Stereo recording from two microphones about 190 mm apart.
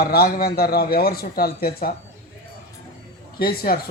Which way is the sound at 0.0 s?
55° left (ahead or behind).